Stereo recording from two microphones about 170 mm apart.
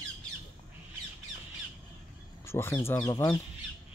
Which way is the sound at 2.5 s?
15° left (ahead or behind).